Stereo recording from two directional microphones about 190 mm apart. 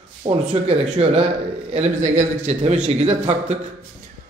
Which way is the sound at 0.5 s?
35° right (ahead or behind).